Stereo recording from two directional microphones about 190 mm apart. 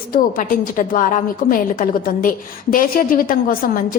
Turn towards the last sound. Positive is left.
turn(degrees=50)  # may be behind; listen again after turning